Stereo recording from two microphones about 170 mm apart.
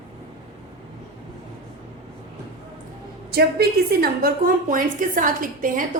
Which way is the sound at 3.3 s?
65° right (ahead or behind).